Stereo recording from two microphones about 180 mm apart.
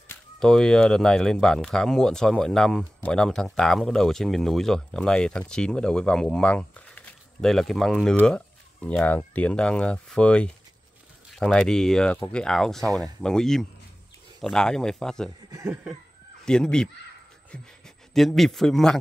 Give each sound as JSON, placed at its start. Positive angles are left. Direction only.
{"t": 0.1, "sound": "speech", "side_deg": 5}
{"t": 15.5, "sound": "chuckle", "side_deg": -20}
{"t": 16.4, "sound": "speech", "side_deg": 5}
{"t": 18.1, "sound": "speech", "side_deg": 0}